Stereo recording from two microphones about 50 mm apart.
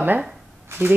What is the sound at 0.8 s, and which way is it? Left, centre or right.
Speech, right.